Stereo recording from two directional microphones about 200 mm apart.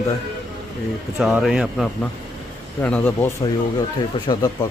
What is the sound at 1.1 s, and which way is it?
Speech, centre (ahead or behind).